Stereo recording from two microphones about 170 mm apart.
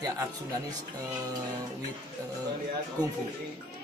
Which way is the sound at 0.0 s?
20° right (ahead or behind).